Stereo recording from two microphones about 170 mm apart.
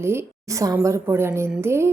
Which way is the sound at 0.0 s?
15° right (ahead or behind).